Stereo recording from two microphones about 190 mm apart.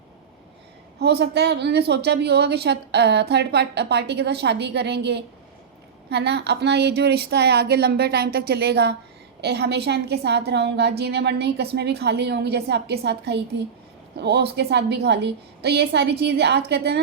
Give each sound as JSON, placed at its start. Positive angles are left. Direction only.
{"t": 0.9, "sound": "a woman's voice", "side_deg": -60}